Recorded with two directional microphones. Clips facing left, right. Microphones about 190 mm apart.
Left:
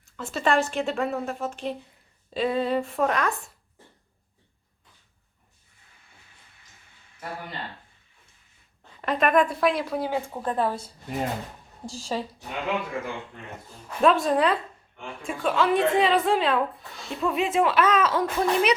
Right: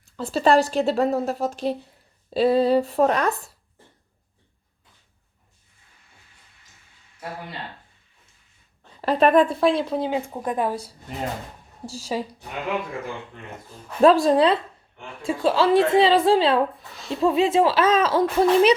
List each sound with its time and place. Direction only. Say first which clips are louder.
0.0 s speech: right 6 dB; 35° right (ahead or behind)
9.0 s a woman's voice: right 5 dB; 30° right (ahead or behind); by 10.8 s 15° right (ahead or behind)
12.1 s speech: right 2 dB; 10° right (ahead or behind)
14.0 s a woman's voice: right 5 dB; 35° right (ahead or behind)